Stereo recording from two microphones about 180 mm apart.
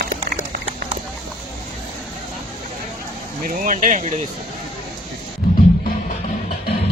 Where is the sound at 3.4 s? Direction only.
45° right (ahead or behind).